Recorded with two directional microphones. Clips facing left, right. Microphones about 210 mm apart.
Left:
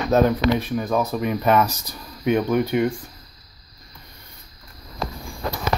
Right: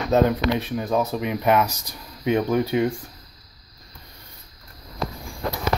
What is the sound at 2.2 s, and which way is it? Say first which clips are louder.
Speech: left 1 dB; 30° right (ahead or behind).